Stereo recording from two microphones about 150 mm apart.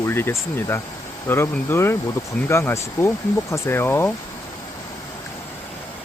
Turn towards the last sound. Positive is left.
turn(degrees=15)  # may be behind; listen again after turning